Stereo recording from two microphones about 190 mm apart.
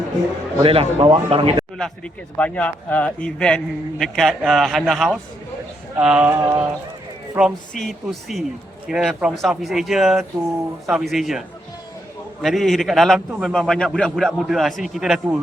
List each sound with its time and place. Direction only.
0.6 s a man's voice: 30° right (ahead or behind)
2.4 s a man's voice: 5° left (ahead or behind)
6.4 s speech: 15° right (ahead or behind)
7.3 s a man's voice: centre (ahead or behind)